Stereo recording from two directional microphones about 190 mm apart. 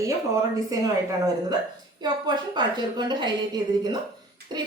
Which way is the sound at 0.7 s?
20° right (ahead or behind).